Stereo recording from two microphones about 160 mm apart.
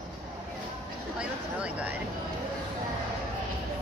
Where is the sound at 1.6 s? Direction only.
10° right (ahead or behind).